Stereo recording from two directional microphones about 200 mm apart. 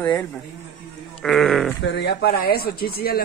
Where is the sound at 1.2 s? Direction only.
Centre (ahead or behind).